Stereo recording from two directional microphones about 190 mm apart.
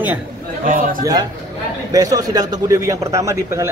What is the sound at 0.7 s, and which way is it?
Speech, 45° right (ahead or behind).